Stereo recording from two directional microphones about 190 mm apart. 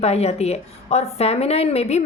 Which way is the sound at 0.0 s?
35° left (ahead or behind).